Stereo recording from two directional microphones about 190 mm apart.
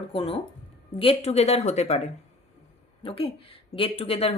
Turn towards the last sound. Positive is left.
turn(degrees=30)  # may be behind; listen again after turning